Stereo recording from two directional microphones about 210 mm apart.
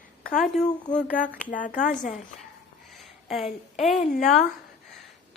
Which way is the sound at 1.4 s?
40° left (ahead or behind).